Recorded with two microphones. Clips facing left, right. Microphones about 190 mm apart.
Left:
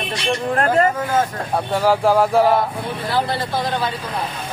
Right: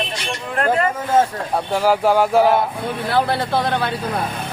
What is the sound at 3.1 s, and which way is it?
Speech, 60° right (ahead or behind).